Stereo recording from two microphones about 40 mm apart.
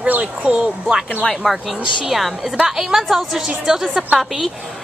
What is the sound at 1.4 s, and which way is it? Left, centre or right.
A woman's voice, centre.